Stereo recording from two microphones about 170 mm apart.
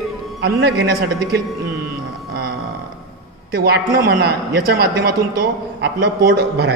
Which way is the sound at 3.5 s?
65° right (ahead or behind).